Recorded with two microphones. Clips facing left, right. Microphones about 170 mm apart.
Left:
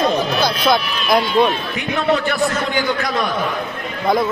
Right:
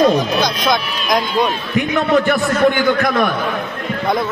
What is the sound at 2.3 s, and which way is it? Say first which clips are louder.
A man's voice: right 5 dB; 50° right (ahead or behind).